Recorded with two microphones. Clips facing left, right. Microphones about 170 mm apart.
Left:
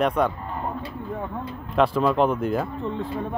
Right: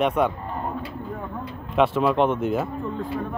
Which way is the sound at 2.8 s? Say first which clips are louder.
Even; 30° left (ahead or behind).